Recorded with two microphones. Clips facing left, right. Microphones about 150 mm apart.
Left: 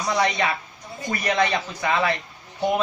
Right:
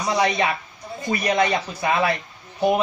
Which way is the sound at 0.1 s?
25° right (ahead or behind).